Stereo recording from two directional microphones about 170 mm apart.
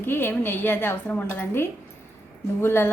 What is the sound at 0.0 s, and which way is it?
A woman's voice, 15° left (ahead or behind).